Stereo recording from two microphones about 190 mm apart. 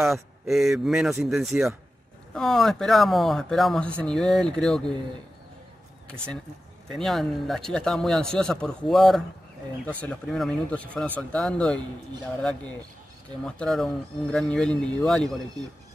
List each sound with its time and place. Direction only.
0.0 s speech: centre (ahead or behind)
6.9 s speech: centre (ahead or behind)